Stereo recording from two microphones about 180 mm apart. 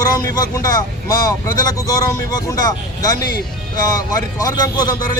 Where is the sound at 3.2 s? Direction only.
60° left (ahead or behind).